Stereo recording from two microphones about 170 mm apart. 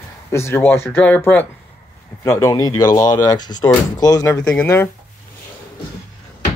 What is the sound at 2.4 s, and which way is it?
Speech, 20° left (ahead or behind).